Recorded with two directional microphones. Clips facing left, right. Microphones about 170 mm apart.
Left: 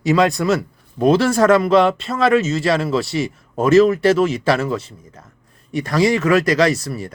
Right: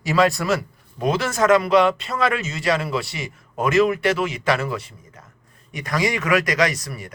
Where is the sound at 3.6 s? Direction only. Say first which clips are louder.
Left 6 dB; 30° left (ahead or behind).